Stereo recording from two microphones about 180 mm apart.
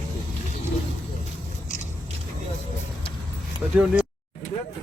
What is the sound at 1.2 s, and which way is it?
Biting, 45° left (ahead or behind).